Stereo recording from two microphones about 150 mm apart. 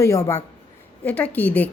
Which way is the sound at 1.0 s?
10° left (ahead or behind).